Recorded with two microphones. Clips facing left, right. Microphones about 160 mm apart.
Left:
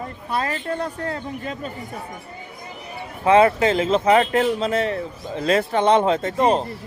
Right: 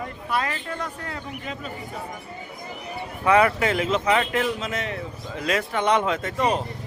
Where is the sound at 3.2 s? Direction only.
25° left (ahead or behind).